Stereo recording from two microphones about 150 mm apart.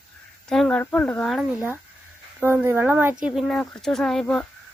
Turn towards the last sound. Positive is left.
turn(degrees=0)  # may be behind; listen again after turning